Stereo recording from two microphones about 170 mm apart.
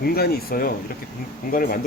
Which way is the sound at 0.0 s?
65° left (ahead or behind).